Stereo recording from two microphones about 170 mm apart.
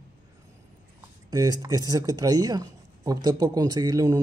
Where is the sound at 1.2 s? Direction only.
20° right (ahead or behind).